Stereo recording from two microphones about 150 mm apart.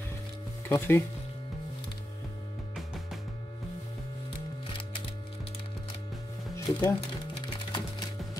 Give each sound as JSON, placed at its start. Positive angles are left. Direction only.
{"t": 0.7, "sound": "speech", "side_deg": 15}
{"t": 6.6, "sound": "speech", "side_deg": 20}
{"t": 7.4, "sound": "music", "side_deg": 30}